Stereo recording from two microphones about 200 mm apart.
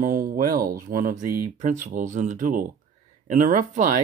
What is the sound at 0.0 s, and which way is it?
Speech, 45° right (ahead or behind).